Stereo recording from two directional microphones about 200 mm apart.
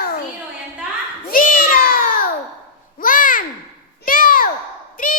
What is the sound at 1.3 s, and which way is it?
Meow, 40° left (ahead or behind).